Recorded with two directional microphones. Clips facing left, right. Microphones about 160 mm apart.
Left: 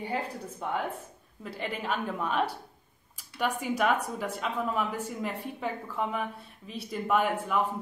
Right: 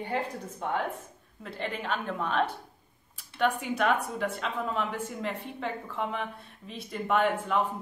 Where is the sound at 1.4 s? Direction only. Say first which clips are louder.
Even; 5° left (ahead or behind).